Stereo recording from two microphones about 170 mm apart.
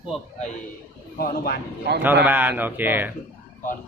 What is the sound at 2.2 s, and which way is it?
Speech, 10° right (ahead or behind).